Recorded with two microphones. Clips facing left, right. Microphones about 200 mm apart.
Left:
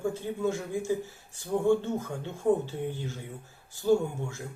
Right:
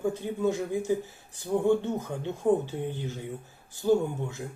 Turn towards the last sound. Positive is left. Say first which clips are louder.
# even
turn(degrees=-20)  # may be behind; listen again after turning